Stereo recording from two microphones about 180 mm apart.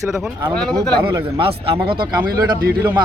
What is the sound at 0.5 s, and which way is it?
Speech, 5° left (ahead or behind).